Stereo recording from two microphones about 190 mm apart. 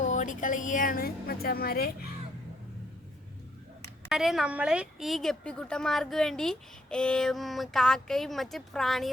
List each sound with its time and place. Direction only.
0.0 s speech: 40° left (ahead or behind)
4.1 s a woman's voice: centre (ahead or behind)